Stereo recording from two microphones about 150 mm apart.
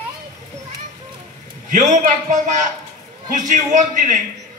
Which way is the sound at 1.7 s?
60° right (ahead or behind).